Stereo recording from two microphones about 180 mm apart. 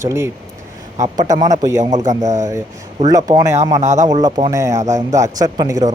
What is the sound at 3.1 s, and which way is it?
Speech, 20° right (ahead or behind).